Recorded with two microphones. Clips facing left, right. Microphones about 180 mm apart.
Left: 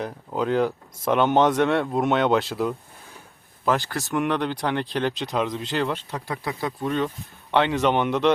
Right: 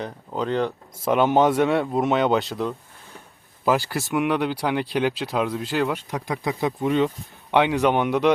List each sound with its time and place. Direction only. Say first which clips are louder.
0.0 s speech: left 1 dB; 5° left (ahead or behind)
3.7 s speech: right 2 dB; 10° right (ahead or behind)